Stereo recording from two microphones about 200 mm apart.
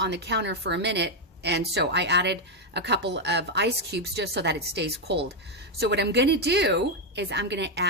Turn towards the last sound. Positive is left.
turn(degrees=-60)  # may be behind; listen again after turning